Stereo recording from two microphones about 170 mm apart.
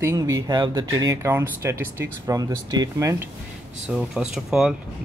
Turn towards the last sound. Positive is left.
turn(degrees=-5)  # may be behind; listen again after turning